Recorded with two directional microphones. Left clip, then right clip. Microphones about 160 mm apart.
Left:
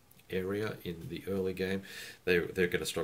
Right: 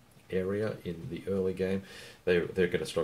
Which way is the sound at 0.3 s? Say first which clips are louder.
Right 3 dB; 15° left (ahead or behind).